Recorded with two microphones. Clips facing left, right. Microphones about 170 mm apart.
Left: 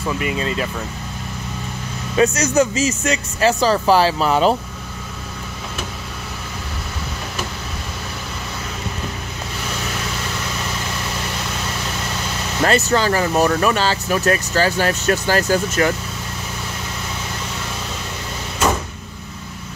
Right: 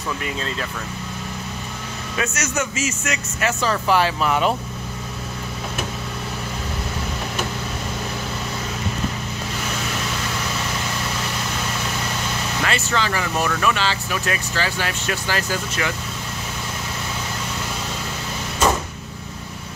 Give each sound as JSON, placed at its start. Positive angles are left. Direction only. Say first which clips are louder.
{"t": 0.2, "sound": "speech", "louder": "left 5 dB", "side_deg": 10}
{"t": 2.1, "sound": "speech", "louder": "left 9 dB", "side_deg": 35}
{"t": 12.6, "sound": "speech", "louder": "left 8 dB", "side_deg": 40}